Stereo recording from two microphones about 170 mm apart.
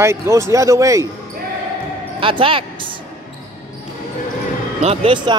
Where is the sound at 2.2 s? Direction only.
30° right (ahead or behind).